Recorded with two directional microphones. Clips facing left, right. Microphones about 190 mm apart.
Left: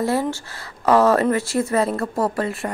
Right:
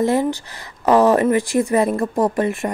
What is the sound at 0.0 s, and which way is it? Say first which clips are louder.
Speech: right 4 dB; 15° right (ahead or behind).